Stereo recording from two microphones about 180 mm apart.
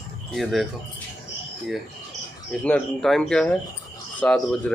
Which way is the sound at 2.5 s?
Centre (ahead or behind).